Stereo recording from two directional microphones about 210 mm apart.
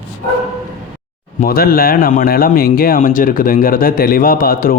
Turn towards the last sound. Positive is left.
turn(degrees=45)  # may be behind; listen again after turning